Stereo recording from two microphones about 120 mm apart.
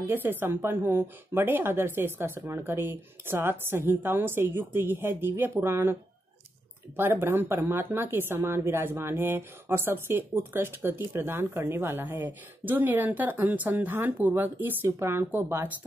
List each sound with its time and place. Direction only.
0.0 s speech: 15° right (ahead or behind)
7.0 s speech: 20° right (ahead or behind)